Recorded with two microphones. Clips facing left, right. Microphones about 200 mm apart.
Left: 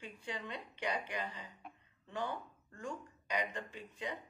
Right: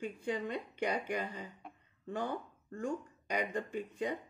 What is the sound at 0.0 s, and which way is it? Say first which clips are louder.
Speech: right 8 dB; 45° right (ahead or behind).